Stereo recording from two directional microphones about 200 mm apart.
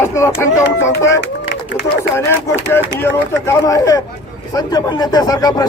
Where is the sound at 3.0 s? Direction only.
10° left (ahead or behind).